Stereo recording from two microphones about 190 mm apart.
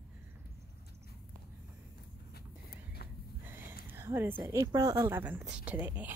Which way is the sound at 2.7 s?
55° left (ahead or behind).